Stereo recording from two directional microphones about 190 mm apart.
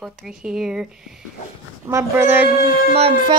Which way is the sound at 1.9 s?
15° right (ahead or behind).